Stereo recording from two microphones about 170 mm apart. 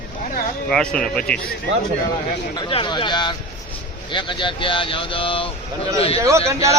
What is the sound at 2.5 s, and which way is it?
Speech, 25° left (ahead or behind).